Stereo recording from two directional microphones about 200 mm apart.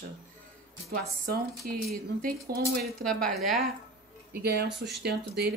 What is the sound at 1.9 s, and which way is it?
Speech, 45° right (ahead or behind).